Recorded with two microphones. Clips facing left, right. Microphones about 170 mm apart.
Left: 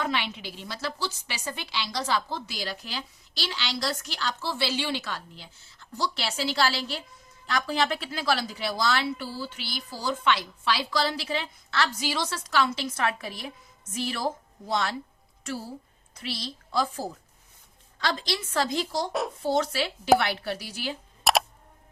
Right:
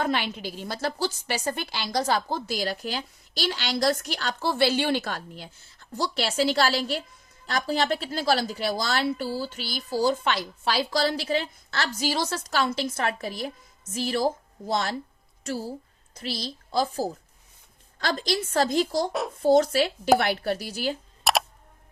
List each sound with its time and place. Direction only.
0.0 s a woman's voice: 45° right (ahead or behind)
19.1 s shuffling cards: centre (ahead or behind)
19.4 s a woman's voice: 45° right (ahead or behind)
21.3 s a sound: centre (ahead or behind)